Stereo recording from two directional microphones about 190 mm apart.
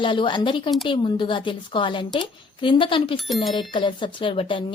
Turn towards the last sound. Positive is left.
turn(degrees=25)  # may be behind; listen again after turning